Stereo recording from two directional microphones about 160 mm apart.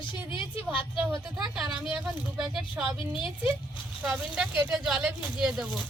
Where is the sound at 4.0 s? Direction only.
5° right (ahead or behind).